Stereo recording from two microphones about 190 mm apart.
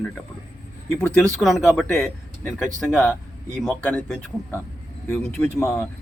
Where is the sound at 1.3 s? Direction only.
Centre (ahead or behind).